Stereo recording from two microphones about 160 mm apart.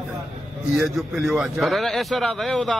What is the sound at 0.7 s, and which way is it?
Speech, centre (ahead or behind).